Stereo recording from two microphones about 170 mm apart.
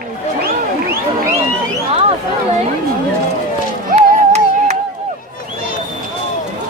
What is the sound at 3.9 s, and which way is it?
Music, 40° right (ahead or behind).